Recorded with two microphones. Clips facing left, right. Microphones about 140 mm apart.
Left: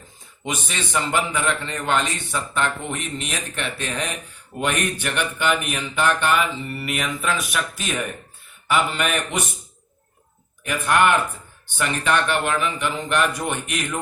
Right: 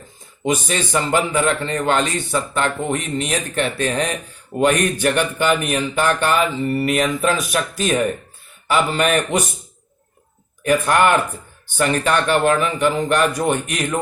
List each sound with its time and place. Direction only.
0.4 s a man's voice: 40° right (ahead or behind)
10.7 s a man's voice: 40° right (ahead or behind)